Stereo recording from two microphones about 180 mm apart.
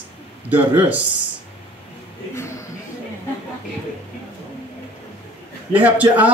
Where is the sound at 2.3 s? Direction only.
15° left (ahead or behind).